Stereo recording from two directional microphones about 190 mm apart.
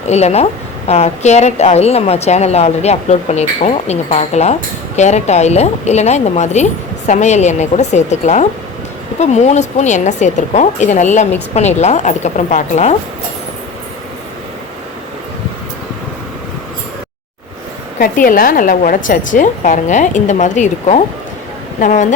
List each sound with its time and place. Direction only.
0.1 s speech: 35° left (ahead or behind)
18.0 s speech: 45° left (ahead or behind)